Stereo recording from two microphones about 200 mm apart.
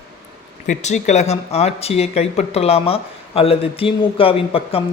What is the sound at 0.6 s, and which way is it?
A man's voice, 35° left (ahead or behind).